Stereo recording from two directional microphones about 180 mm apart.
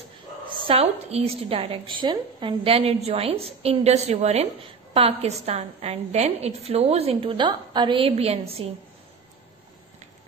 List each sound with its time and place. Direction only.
0.5 s a woman's voice: 30° right (ahead or behind)